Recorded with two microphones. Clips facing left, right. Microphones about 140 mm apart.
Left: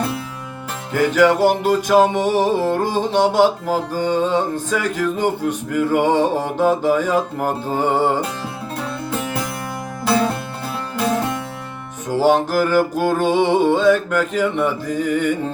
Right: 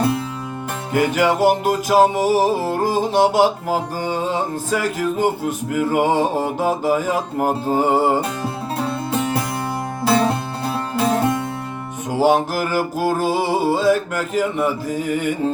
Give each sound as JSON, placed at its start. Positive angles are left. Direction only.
{"t": 0.9, "sound": "music", "side_deg": -10}
{"t": 8.8, "sound": "music", "side_deg": -25}
{"t": 10.7, "sound": "music", "side_deg": -25}
{"t": 12.1, "sound": "music", "side_deg": -10}